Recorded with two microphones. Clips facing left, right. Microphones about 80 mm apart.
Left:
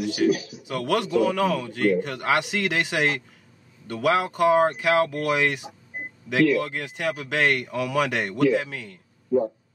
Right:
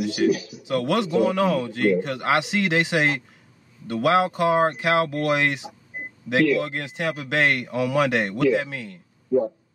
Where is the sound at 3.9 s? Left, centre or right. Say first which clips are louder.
Right 3 dB; centre.